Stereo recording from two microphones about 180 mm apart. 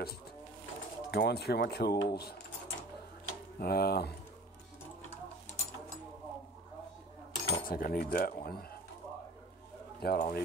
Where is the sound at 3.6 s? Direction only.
60° left (ahead or behind).